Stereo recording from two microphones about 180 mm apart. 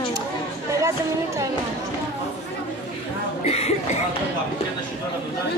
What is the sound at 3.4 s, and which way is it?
Speech, 35° left (ahead or behind).